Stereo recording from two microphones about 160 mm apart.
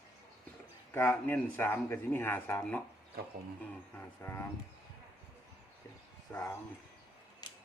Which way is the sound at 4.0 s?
15° left (ahead or behind).